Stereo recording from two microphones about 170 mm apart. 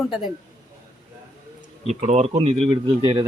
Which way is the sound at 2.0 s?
40° right (ahead or behind).